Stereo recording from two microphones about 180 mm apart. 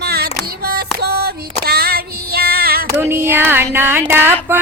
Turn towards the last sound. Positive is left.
turn(degrees=-15)  # may be behind; listen again after turning